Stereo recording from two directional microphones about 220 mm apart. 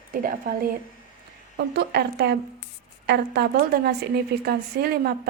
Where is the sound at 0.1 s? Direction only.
40° right (ahead or behind).